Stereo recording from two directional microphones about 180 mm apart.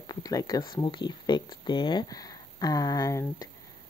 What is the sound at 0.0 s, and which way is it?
Speech, 20° left (ahead or behind).